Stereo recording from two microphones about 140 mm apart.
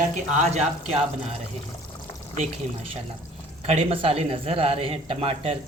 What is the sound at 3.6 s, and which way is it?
Speech, 45° right (ahead or behind).